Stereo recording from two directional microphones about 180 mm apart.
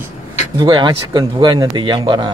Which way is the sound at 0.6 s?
25° right (ahead or behind).